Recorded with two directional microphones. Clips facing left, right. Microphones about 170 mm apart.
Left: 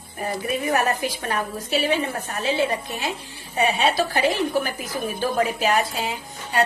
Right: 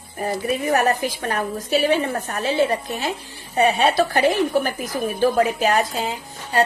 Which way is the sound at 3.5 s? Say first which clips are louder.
Right 4 dB; 55° right (ahead or behind).